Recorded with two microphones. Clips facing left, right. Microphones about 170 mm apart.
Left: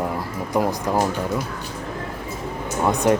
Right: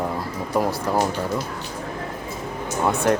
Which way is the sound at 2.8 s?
15° left (ahead or behind).